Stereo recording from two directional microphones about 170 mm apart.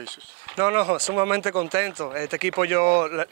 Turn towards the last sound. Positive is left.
turn(degrees=-15)  # may be behind; listen again after turning